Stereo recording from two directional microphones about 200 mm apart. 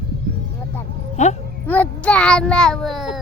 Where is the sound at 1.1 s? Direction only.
35° left (ahead or behind).